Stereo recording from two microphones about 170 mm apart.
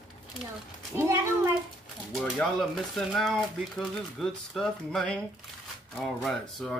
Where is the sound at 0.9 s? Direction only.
15° right (ahead or behind).